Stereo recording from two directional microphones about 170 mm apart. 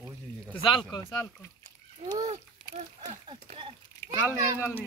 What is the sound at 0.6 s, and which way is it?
Speech, 30° left (ahead or behind).